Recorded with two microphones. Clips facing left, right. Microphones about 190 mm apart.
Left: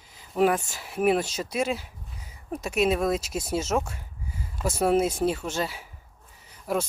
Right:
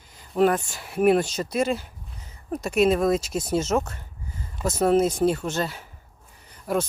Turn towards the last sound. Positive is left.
turn(degrees=0)  # may be behind; listen again after turning